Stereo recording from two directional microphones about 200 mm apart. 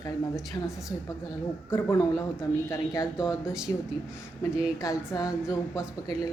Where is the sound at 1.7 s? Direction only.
15° left (ahead or behind).